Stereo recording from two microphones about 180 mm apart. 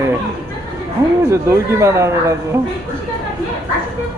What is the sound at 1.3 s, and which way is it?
Speech, 15° right (ahead or behind).